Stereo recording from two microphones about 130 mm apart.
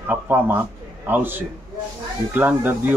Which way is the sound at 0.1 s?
15° right (ahead or behind).